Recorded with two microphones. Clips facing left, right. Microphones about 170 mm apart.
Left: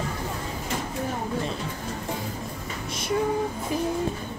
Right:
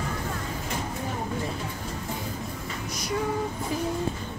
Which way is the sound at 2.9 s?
25° left (ahead or behind).